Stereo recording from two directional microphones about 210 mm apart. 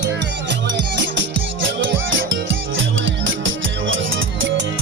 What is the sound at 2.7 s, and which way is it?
Music, 65° right (ahead or behind).